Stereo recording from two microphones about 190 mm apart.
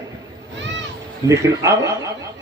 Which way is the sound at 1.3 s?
15° right (ahead or behind).